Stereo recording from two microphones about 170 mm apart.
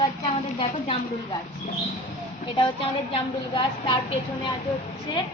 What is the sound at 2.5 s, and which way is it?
A woman's voice, 30° left (ahead or behind).